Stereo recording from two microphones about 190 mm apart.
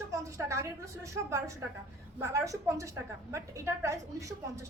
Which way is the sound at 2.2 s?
15° right (ahead or behind).